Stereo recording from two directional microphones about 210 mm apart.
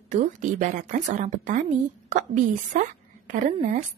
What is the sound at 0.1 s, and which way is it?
A woman's voice, 35° right (ahead or behind).